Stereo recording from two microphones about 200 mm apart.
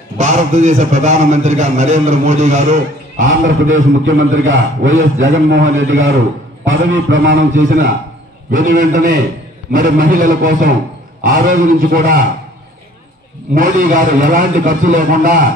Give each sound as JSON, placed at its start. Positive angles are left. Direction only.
{"t": 0.2, "sound": "a man's voice", "side_deg": -35}
{"t": 3.7, "sound": "a man's voice", "side_deg": -70}
{"t": 8.5, "sound": "a man's voice", "side_deg": -45}
{"t": 13.6, "sound": "a man's voice", "side_deg": -45}